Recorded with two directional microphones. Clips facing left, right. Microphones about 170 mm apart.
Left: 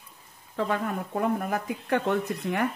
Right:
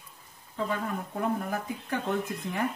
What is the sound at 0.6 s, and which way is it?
Speech, 70° left (ahead or behind).